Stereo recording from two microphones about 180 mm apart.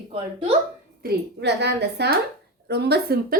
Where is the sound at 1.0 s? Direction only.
65° right (ahead or behind).